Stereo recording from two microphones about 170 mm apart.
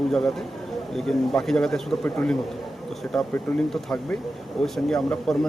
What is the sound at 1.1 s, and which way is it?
Speech, 5° left (ahead or behind).